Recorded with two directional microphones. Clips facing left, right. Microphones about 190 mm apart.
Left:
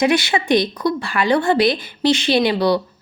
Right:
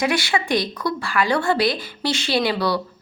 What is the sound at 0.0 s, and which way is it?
Speech, 20° left (ahead or behind).